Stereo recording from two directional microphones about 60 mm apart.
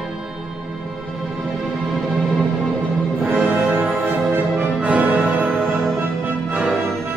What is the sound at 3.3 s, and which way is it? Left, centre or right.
Music, right.